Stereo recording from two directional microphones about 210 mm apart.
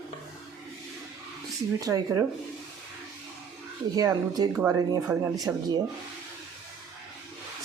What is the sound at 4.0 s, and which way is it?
Speech, 15° right (ahead or behind).